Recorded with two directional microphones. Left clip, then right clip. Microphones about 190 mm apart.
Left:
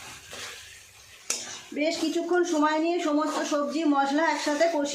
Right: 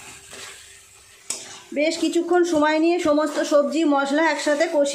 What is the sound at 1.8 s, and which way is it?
Speech, 40° right (ahead or behind).